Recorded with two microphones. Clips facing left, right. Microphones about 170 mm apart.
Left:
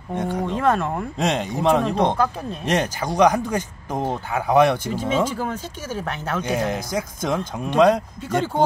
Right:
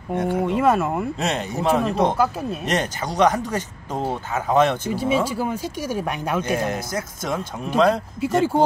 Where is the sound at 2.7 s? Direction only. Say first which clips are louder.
Left 4 dB; 10° left (ahead or behind).